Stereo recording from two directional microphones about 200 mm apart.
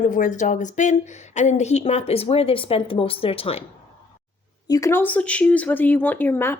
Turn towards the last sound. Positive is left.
turn(degrees=10)  # may be behind; listen again after turning